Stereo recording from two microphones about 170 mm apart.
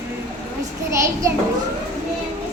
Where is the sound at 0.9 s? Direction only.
15° right (ahead or behind).